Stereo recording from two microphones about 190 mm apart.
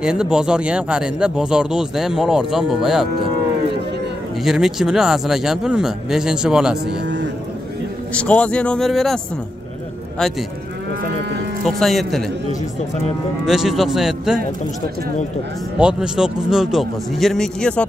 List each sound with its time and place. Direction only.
0.0 s speech: 5° right (ahead or behind)
4.4 s speech: centre (ahead or behind)
6.9 s cattle: 70° right (ahead or behind)
8.1 s speech: 5° left (ahead or behind)
11.6 s speech: centre (ahead or behind)
13.5 s speech: centre (ahead or behind)
15.8 s speech: 5° right (ahead or behind)